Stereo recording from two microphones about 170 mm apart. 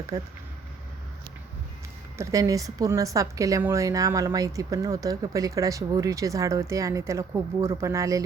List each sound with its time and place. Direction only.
0.1 s a woman's voice: 25° right (ahead or behind)
2.1 s a woman's voice: 20° right (ahead or behind)